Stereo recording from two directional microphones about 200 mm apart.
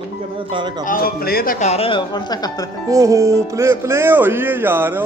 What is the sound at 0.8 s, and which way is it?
Speech, 45° left (ahead or behind).